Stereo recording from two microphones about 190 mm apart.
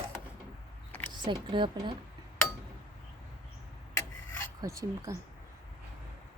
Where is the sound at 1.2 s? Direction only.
25° right (ahead or behind).